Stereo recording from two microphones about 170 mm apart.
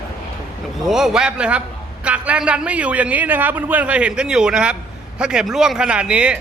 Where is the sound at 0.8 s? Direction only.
Centre (ahead or behind).